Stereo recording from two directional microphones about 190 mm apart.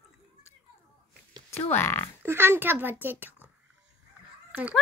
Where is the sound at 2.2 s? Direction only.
10° right (ahead or behind).